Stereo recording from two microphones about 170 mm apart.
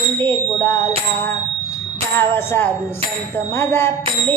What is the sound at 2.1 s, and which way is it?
Speech, 15° left (ahead or behind).